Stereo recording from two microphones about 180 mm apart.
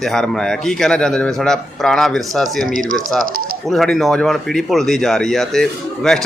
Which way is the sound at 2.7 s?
50° right (ahead or behind).